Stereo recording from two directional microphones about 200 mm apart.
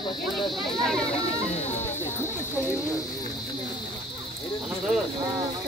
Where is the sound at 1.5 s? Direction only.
35° left (ahead or behind).